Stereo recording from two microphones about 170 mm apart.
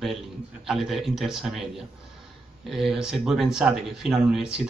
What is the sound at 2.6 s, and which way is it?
A man's voice, centre (ahead or behind).